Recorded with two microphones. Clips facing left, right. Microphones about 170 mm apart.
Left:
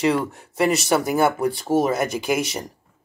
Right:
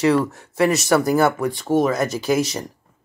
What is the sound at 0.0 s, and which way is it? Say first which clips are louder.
Speech: right 3 dB; 30° left (ahead or behind).